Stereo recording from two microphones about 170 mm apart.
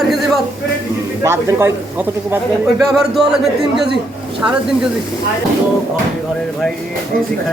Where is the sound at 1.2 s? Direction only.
15° right (ahead or behind).